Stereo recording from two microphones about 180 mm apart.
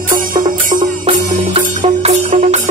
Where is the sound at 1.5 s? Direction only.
35° right (ahead or behind).